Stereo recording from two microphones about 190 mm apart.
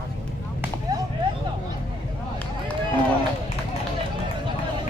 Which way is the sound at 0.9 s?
20° right (ahead or behind).